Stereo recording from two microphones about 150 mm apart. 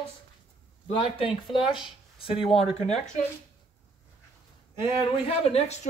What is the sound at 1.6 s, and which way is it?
Speech, 5° right (ahead or behind).